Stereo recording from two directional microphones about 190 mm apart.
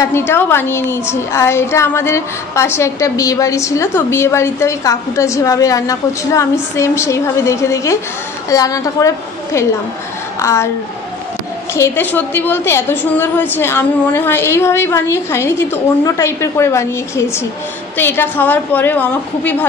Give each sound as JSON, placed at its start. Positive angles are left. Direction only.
{"t": 0.3, "sound": "a woman's voice", "side_deg": 10}
{"t": 11.7, "sound": "speech", "side_deg": 10}